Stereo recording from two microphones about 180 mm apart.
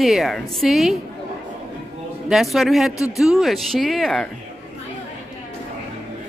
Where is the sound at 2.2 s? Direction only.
Centre (ahead or behind).